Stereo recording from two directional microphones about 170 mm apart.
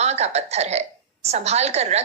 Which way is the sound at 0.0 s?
40° right (ahead or behind).